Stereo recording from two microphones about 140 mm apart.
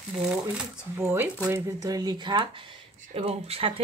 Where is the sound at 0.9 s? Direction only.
20° right (ahead or behind).